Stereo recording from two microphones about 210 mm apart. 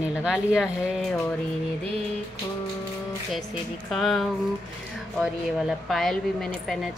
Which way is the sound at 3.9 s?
Centre (ahead or behind).